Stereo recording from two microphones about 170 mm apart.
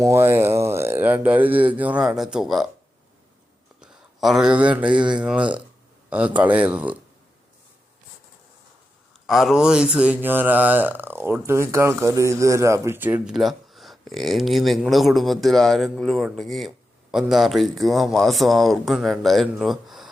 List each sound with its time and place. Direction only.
0.0 s speech: 15° right (ahead or behind)
3.8 s speech: centre (ahead or behind)
9.2 s mantra: centre (ahead or behind)